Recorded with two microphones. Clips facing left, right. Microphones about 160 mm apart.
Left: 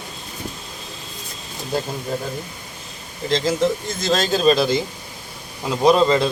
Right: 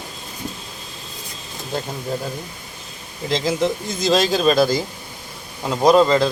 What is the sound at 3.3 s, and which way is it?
Speech, 5° right (ahead or behind).